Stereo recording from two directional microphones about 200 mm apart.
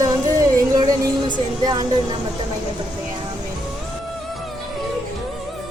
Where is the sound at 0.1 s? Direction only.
15° right (ahead or behind).